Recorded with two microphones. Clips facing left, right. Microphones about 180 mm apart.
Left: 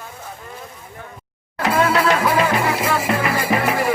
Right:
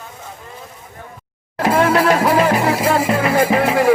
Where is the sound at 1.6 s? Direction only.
40° right (ahead or behind).